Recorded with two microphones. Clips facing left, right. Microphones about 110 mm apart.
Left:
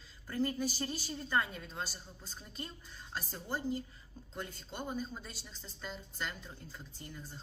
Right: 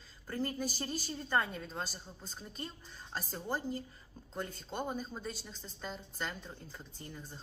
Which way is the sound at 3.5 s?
45° right (ahead or behind).